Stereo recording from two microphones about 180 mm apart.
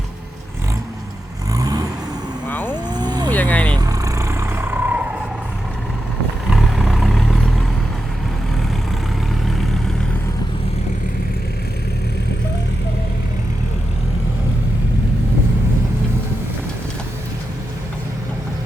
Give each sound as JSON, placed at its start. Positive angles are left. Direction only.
{"t": 1.5, "sound": "vehicle", "side_deg": -20}
{"t": 2.5, "sound": "vehicle", "side_deg": 10}
{"t": 2.9, "sound": "vehicle", "side_deg": -25}
{"t": 3.2, "sound": "vehicle", "side_deg": 10}
{"t": 3.8, "sound": "vehicle", "side_deg": -20}
{"t": 6.5, "sound": "vehicle", "side_deg": 0}